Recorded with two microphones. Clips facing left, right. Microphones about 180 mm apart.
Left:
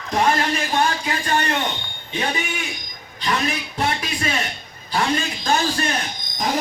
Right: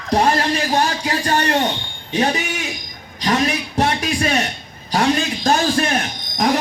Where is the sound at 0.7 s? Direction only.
40° right (ahead or behind).